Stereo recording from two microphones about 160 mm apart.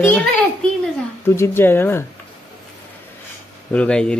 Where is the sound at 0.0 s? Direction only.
5° left (ahead or behind).